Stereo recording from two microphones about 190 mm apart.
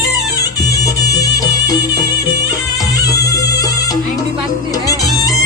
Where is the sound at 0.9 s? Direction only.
20° left (ahead or behind).